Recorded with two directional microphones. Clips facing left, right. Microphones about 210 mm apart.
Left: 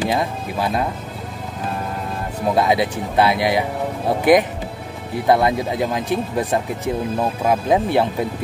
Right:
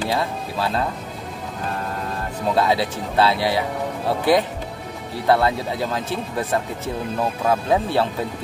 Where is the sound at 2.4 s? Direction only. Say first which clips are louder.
Left 2 dB; 15° left (ahead or behind).